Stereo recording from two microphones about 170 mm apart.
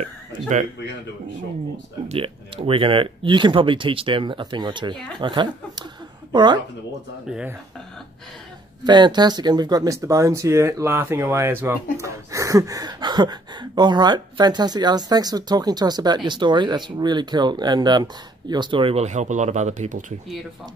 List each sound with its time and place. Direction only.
0.0 s speech: 45° right (ahead or behind)
2.0 s speech: 35° right (ahead or behind)
4.9 s speech: 5° left (ahead or behind)
5.2 s speech: 30° right (ahead or behind)
7.2 s speech: 5° right (ahead or behind)
8.8 s speech: 25° right (ahead or behind); by 20.2 s 45° right (ahead or behind)